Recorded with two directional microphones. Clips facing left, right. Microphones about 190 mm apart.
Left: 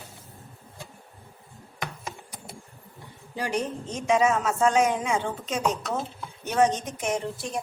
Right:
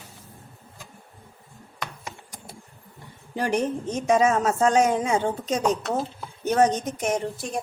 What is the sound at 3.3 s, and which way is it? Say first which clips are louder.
A woman's voice: right 4 dB; 50° right (ahead or behind).